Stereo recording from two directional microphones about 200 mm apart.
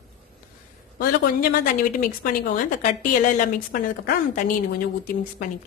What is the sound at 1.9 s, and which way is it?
A woman's voice, 45° left (ahead or behind).